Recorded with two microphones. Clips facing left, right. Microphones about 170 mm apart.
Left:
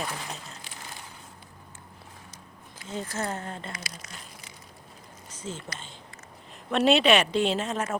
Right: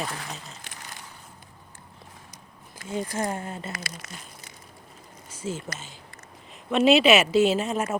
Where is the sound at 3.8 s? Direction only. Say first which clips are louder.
Right 3 dB; 50° right (ahead or behind).